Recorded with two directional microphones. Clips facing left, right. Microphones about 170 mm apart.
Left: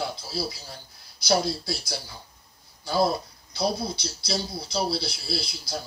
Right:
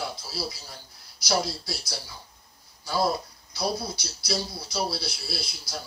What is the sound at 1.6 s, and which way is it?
Speech, 55° left (ahead or behind).